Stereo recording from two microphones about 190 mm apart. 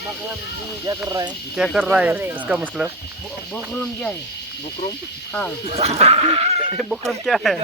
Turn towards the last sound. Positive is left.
turn(degrees=0)  # may be behind; listen again after turning